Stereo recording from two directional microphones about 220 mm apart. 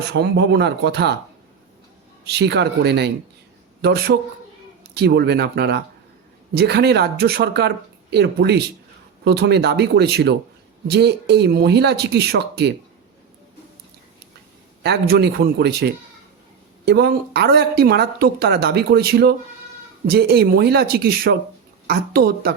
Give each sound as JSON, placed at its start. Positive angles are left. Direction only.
{"t": 0.0, "sound": "speech", "side_deg": -50}
{"t": 2.2, "sound": "a man's voice", "side_deg": -50}
{"t": 14.8, "sound": "speech", "side_deg": -45}